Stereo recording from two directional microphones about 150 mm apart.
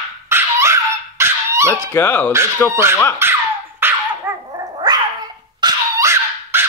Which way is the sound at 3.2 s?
15° right (ahead or behind).